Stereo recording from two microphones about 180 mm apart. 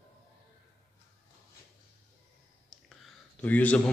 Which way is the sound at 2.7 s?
5° left (ahead or behind).